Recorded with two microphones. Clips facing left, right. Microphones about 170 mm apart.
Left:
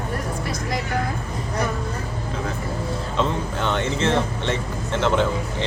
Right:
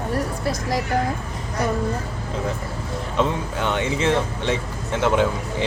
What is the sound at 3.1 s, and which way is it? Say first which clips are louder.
Speech: right 2 dB; 10° right (ahead or behind).